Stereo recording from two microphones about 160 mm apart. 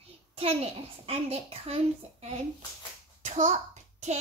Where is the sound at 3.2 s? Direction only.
45° right (ahead or behind).